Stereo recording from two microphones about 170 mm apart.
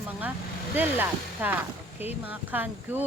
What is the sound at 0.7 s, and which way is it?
Speech, 10° right (ahead or behind).